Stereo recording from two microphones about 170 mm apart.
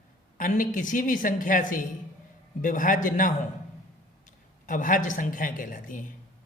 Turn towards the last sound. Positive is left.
turn(degrees=50)  # may be behind; listen again after turning